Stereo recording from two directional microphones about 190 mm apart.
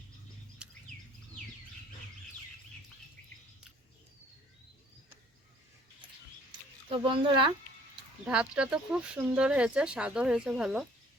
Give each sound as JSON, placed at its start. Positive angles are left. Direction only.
{"t": 0.6, "sound": "bird", "side_deg": -5}
{"t": 6.8, "sound": "speech", "side_deg": -25}
{"t": 8.2, "sound": "speech", "side_deg": -5}